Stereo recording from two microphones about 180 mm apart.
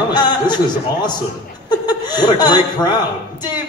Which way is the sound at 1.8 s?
25° left (ahead or behind).